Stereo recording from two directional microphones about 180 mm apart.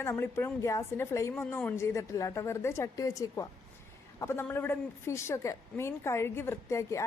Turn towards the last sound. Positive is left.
turn(degrees=15)  # may be behind; listen again after turning